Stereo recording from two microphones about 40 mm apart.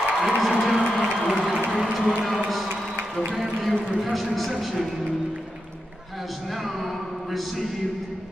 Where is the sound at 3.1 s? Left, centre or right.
Centre.